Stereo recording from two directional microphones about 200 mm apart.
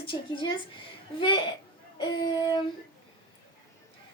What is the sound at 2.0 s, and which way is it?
Speech, 20° left (ahead or behind).